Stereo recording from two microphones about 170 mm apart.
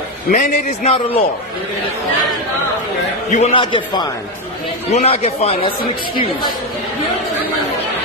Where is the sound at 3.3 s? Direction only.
40° left (ahead or behind).